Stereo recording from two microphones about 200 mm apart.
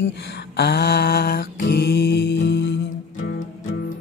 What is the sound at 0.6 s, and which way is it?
Mantra, 50° left (ahead or behind).